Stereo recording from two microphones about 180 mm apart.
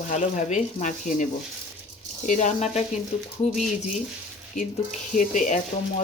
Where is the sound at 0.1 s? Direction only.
45° left (ahead or behind).